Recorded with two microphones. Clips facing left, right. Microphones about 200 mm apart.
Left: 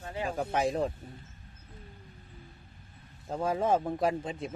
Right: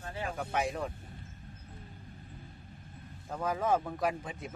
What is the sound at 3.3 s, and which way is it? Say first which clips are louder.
Speech: left 3 dB; 30° left (ahead or behind).